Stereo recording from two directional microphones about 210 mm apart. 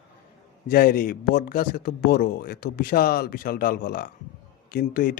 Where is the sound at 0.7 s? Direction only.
45° left (ahead or behind).